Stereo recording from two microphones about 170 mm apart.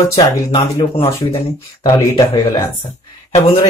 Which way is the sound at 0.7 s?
35° left (ahead or behind).